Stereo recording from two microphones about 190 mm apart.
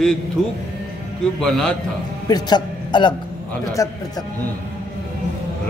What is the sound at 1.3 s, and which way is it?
Speech, 5° left (ahead or behind).